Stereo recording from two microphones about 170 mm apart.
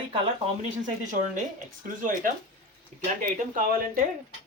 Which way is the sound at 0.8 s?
50° right (ahead or behind).